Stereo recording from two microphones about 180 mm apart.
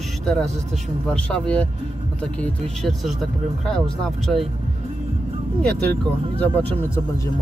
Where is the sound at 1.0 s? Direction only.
5° left (ahead or behind).